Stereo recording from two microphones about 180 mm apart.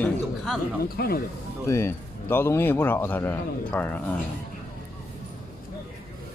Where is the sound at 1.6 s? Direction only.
15° left (ahead or behind).